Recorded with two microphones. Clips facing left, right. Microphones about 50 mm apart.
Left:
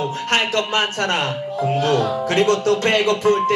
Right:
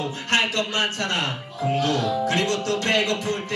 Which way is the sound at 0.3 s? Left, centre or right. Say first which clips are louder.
Left 3 dB; left.